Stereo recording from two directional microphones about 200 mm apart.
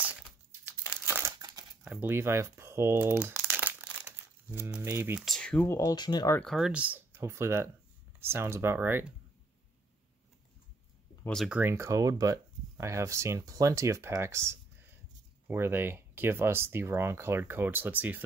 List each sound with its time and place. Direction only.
1.0 s crumpling: 15° right (ahead or behind)
1.9 s speech: 10° right (ahead or behind)
3.3 s crumpling: 10° right (ahead or behind)
4.5 s speech: 5° right (ahead or behind)
5.2 s speech: 5° left (ahead or behind)
6.4 s speech: centre (ahead or behind)
11.2 s speech: centre (ahead or behind)